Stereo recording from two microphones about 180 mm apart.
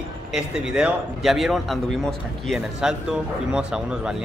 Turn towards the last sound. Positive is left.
turn(degrees=-5)  # may be behind; listen again after turning